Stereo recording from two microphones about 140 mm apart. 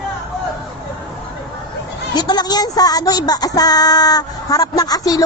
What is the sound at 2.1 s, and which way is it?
Speech, 30° left (ahead or behind).